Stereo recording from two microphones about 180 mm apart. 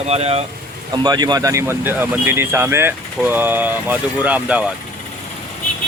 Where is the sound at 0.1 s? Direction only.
35° right (ahead or behind).